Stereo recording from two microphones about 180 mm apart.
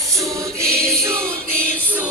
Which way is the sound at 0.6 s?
5° left (ahead or behind).